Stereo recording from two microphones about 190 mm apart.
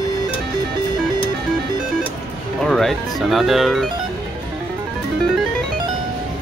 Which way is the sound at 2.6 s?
Centre (ahead or behind).